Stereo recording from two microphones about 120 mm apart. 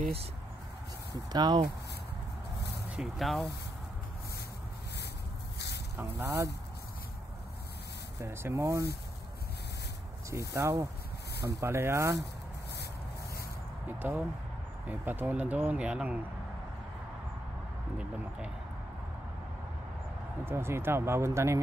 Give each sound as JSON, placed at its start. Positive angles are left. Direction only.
{"t": 1.3, "sound": "speech", "side_deg": -35}
{"t": 2.9, "sound": "speech", "side_deg": -5}
{"t": 5.9, "sound": "speech", "side_deg": -25}
{"t": 8.2, "sound": "speech", "side_deg": -20}
{"t": 10.3, "sound": "speech", "side_deg": -25}
{"t": 13.8, "sound": "speech", "side_deg": -15}
{"t": 20.4, "sound": "speech", "side_deg": -20}